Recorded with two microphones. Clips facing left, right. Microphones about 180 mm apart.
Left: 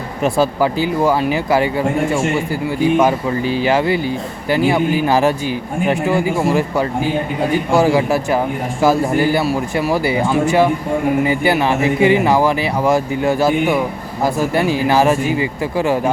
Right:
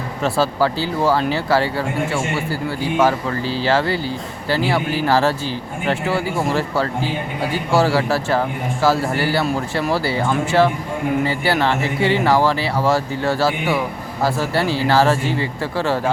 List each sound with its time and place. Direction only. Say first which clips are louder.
0.2 s speech: left 3 dB; 15° left (ahead or behind)
9.4 s speech: left 3 dB; 10° left (ahead or behind)